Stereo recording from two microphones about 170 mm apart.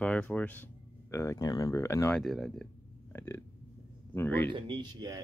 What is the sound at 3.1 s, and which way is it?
Burping, 15° left (ahead or behind).